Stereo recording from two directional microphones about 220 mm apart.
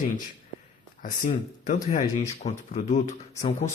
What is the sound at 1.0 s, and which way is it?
Speech, 35° left (ahead or behind).